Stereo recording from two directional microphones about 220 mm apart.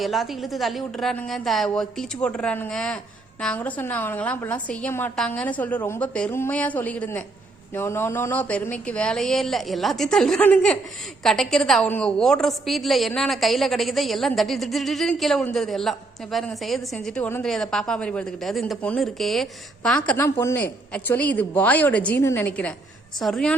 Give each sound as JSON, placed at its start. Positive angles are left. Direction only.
{"t": 0.0, "sound": "a woman's voice", "side_deg": 0}